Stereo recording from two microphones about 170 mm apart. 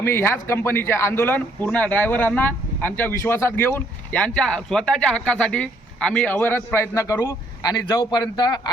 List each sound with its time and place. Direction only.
0.0 s a man's voice: 15° left (ahead or behind)